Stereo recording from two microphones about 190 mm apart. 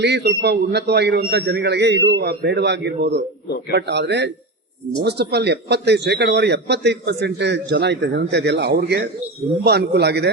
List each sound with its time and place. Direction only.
0.0 s a man's voice: 60° right (ahead or behind)